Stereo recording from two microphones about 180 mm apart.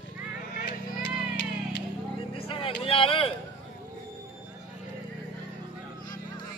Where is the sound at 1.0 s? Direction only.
70° left (ahead or behind).